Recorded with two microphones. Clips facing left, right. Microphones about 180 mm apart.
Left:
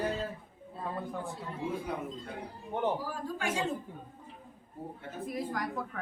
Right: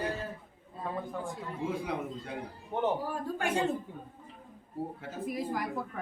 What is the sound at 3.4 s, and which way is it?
Speech, 60° right (ahead or behind).